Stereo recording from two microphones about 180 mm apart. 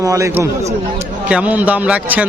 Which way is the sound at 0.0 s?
20° right (ahead or behind).